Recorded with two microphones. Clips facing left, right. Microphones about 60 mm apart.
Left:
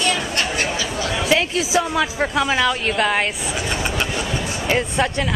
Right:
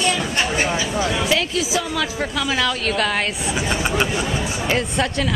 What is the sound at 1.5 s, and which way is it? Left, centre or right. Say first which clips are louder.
A woman's voice: left 3 dB; left.